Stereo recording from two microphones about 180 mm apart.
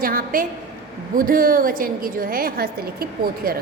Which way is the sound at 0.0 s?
50° right (ahead or behind).